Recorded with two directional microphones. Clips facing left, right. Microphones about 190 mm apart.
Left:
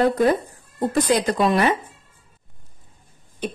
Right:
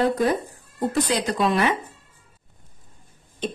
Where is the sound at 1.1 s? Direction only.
40° left (ahead or behind).